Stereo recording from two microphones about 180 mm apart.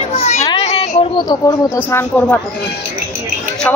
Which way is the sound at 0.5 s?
35° left (ahead or behind).